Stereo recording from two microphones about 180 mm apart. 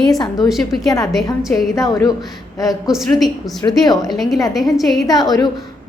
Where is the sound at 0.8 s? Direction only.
20° left (ahead or behind).